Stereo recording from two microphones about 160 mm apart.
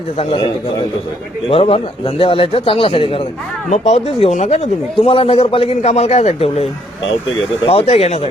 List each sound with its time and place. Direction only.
0.2 s a man's voice: 35° left (ahead or behind)
7.7 s a man's voice: 40° left (ahead or behind)